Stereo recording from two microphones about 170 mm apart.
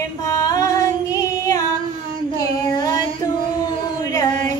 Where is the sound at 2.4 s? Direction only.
25° left (ahead or behind).